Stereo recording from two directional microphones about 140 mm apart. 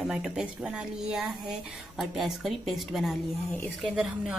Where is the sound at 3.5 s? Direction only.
15° left (ahead or behind).